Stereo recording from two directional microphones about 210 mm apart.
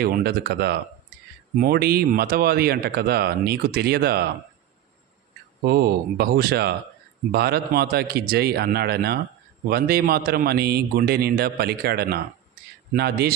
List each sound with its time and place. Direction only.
0.0 s speech: 50° right (ahead or behind)
5.6 s speech: 50° right (ahead or behind)